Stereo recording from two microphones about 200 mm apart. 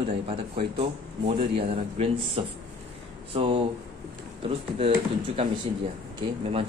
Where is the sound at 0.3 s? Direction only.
30° right (ahead or behind).